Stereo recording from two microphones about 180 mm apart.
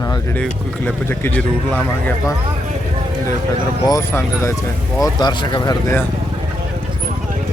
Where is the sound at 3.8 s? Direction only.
15° left (ahead or behind).